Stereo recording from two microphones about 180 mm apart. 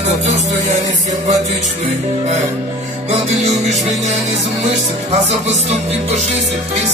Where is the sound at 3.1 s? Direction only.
40° right (ahead or behind).